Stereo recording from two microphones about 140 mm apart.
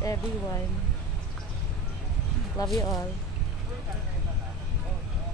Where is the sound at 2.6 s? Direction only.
25° left (ahead or behind).